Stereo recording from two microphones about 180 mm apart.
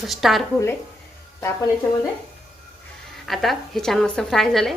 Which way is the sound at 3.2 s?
Centre (ahead or behind).